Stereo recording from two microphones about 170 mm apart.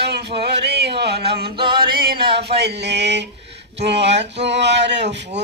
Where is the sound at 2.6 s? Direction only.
80° right.